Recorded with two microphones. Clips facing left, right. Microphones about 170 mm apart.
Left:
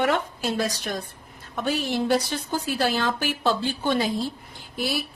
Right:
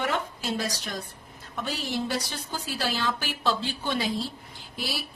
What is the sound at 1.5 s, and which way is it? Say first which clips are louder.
A woman's voice: left 5 dB; 55° left (ahead or behind).